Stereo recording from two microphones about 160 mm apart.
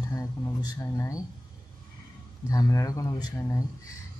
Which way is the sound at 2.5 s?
20° left (ahead or behind).